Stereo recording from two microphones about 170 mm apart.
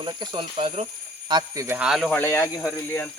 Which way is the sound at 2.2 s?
15° left (ahead or behind).